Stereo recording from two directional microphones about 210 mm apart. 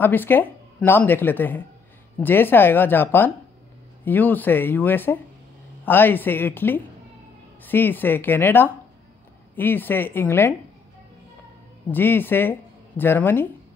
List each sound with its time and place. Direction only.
0.0 s speech: 10° left (ahead or behind)
11.9 s speech: 10° left (ahead or behind)